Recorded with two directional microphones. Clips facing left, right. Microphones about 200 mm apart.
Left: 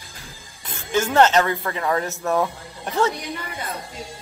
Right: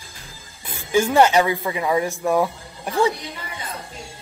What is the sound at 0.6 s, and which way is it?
Speech, 10° right (ahead or behind).